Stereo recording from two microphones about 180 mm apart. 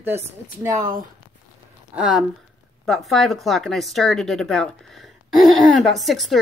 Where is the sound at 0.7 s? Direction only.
50° right (ahead or behind).